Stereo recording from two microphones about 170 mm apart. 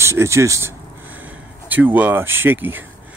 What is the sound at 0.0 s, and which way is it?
Speech, 15° right (ahead or behind).